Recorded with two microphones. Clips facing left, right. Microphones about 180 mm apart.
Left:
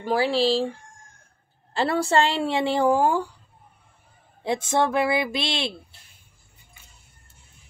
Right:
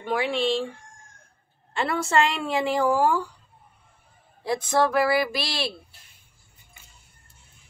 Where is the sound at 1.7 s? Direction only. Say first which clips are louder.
Left 3 dB; 35° left (ahead or behind).